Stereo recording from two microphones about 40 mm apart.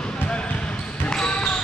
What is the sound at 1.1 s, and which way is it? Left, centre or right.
Basketball bounce, left.